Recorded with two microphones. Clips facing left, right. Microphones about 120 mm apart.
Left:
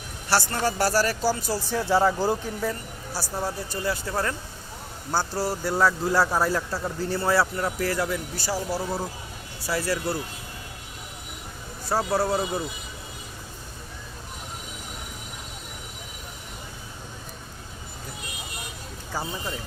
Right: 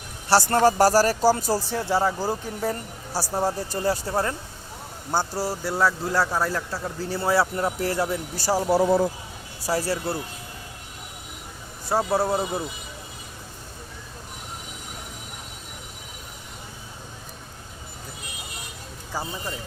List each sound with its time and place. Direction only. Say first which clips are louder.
0.3 s speech: right 6 dB; 40° right (ahead or behind)
1.9 s speech: left 2 dB; 20° right (ahead or behind)
2.6 s speech: right 2 dB; 40° right (ahead or behind)
4.1 s speech: right 2 dB; 25° right (ahead or behind)
5.1 s speech: right 1 dB; 10° right (ahead or behind)
7.2 s speech: right 1 dB; 15° right (ahead or behind)
7.5 s speech: right 1 dB; 25° right (ahead or behind)
9.6 s speech: right 1 dB; 35° right (ahead or behind)
11.9 s speech: right 1 dB; 20° right (ahead or behind)
19.1 s speech: even; 5° right (ahead or behind)